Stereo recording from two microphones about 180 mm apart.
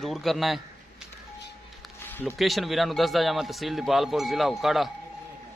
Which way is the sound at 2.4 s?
Centre (ahead or behind).